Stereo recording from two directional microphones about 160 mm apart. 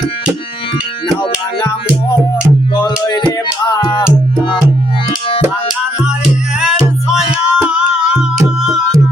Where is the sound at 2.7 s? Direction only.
25° left (ahead or behind).